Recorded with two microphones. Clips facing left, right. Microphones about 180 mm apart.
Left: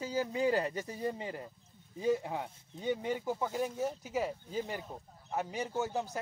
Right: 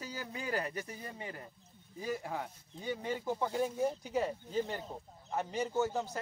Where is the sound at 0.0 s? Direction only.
20° left (ahead or behind).